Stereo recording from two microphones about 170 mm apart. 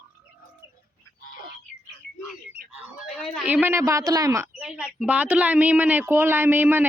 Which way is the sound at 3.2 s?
5° right (ahead or behind).